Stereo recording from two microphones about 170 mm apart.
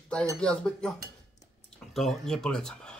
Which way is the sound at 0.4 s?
5° left (ahead or behind).